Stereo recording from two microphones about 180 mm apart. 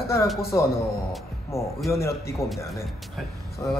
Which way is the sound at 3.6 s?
15° left (ahead or behind).